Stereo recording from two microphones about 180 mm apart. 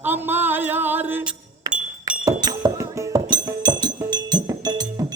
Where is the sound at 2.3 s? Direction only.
20° right (ahead or behind).